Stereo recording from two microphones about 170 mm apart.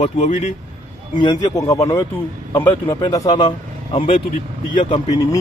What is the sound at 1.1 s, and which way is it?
Speech, 25° left (ahead or behind).